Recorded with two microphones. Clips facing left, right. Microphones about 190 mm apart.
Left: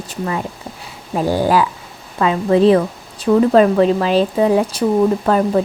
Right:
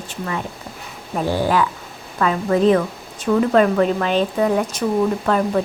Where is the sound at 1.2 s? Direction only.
40° left (ahead or behind).